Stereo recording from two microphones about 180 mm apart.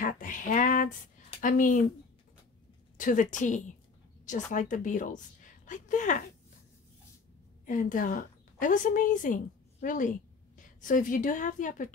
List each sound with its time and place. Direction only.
0.0 s a sound: 45° left (ahead or behind)
1.4 s a woman's voice: 45° left (ahead or behind)
3.0 s a woman's voice: 45° left (ahead or behind)
7.6 s a woman's voice: 50° left (ahead or behind)